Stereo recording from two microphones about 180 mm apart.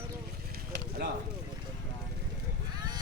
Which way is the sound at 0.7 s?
65° right (ahead or behind).